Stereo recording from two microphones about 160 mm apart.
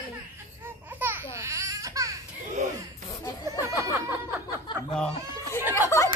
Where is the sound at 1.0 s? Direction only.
15° right (ahead or behind).